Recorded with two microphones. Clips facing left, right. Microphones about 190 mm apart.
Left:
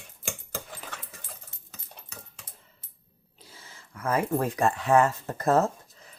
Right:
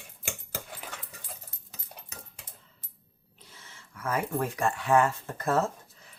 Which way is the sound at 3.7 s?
35° left (ahead or behind).